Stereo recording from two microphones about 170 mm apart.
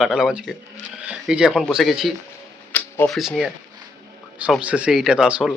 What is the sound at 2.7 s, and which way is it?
Camera, 10° left (ahead or behind).